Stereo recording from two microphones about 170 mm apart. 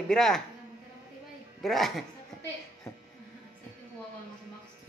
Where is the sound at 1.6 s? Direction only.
Centre (ahead or behind).